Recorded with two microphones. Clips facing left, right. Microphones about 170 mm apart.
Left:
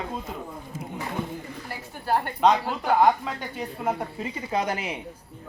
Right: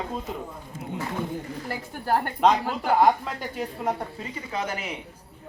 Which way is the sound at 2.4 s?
Centre (ahead or behind).